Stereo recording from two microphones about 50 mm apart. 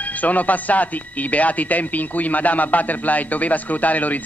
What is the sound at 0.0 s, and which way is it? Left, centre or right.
Speech, left.